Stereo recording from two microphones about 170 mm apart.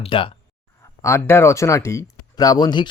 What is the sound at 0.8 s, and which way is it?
Speech, 15° left (ahead or behind).